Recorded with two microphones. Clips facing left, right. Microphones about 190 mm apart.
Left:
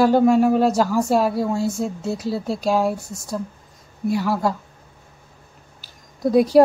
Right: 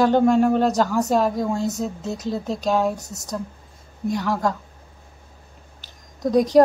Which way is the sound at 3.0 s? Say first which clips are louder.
Left 2 dB; 40° right (ahead or behind).